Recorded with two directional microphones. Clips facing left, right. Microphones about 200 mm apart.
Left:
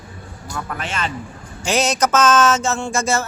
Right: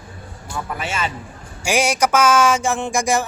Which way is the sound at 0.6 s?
5° right (ahead or behind).